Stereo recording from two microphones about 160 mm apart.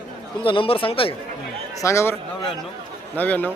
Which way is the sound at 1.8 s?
15° left (ahead or behind).